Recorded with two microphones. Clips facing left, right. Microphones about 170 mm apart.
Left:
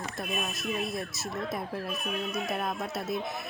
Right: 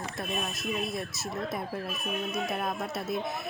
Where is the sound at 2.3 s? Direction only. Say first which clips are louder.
Right 1 dB; centre (ahead or behind).